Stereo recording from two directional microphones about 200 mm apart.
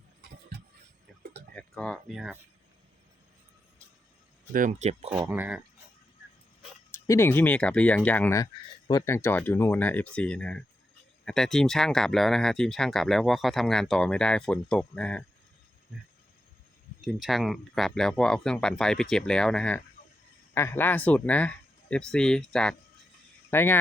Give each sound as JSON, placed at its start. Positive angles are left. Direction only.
{"t": 1.5, "sound": "speech", "side_deg": 5}
{"t": 4.5, "sound": "speech", "side_deg": -40}
{"t": 5.1, "sound": "speech", "side_deg": -10}
{"t": 7.1, "sound": "speech", "side_deg": 10}
{"t": 17.0, "sound": "speech", "side_deg": 0}